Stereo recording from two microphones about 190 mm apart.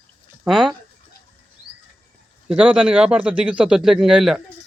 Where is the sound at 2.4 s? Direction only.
5° right (ahead or behind).